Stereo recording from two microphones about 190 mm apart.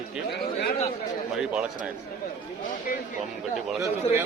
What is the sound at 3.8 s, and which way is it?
Speech, 15° right (ahead or behind).